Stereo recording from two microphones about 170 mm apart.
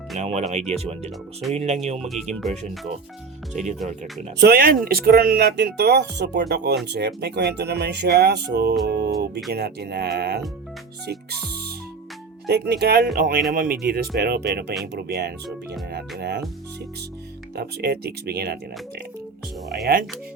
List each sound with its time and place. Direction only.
0.2 s speech: 40° right (ahead or behind)
2.0 s speech: centre (ahead or behind)
3.5 s speech: 45° right (ahead or behind)
4.4 s speech: 65° right (ahead or behind); by 8.7 s 85° right
8.9 s music: 75° right (ahead or behind)
9.5 s speech: 75° right (ahead or behind)
12.5 s speech: 75° right (ahead or behind)
13.1 s speech: 55° right (ahead or behind); by 16.4 s 75° right (ahead or behind)
17.5 s speech: 75° right (ahead or behind)